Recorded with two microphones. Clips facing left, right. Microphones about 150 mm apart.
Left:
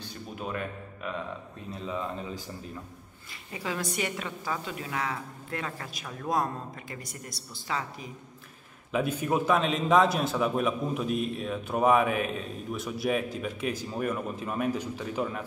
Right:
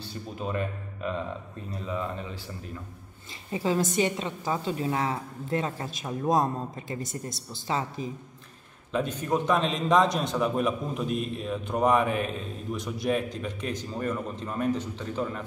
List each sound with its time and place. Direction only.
0.5 s a man's voice: centre (ahead or behind)
3.5 s a woman's voice: 30° right (ahead or behind)
8.9 s a man's voice: 10° left (ahead or behind)